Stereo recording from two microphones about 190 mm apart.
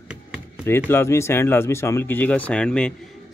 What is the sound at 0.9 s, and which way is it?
Speech, 15° left (ahead or behind).